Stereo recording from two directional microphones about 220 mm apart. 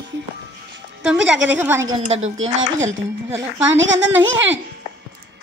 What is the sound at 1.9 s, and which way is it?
Speech, 30° right (ahead or behind).